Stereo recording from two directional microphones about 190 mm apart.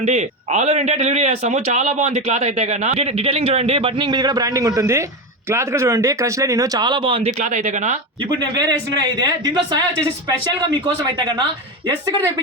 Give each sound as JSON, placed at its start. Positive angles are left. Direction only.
{"t": 0.0, "sound": "speech", "side_deg": -35}
{"t": 8.2, "sound": "speech", "side_deg": -25}